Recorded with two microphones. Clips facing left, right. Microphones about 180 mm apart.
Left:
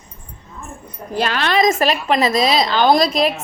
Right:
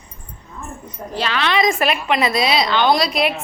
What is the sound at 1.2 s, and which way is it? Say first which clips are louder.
A woman's voice: left 2 dB; 45° left (ahead or behind).